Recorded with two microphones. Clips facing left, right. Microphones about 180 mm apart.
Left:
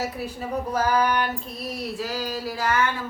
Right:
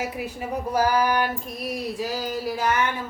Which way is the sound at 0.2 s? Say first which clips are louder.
Even; 10° right (ahead or behind).